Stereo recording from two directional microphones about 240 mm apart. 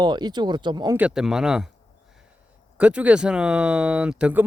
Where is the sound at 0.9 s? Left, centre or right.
Centre.